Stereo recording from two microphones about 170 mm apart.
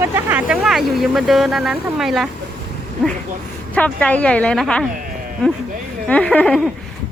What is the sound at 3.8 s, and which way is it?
Speech, 5° left (ahead or behind).